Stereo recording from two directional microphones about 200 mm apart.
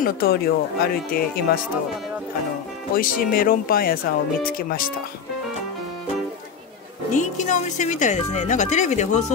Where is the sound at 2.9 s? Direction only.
45° left (ahead or behind).